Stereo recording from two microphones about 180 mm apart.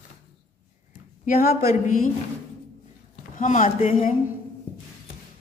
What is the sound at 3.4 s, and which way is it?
Speech, 45° left (ahead or behind).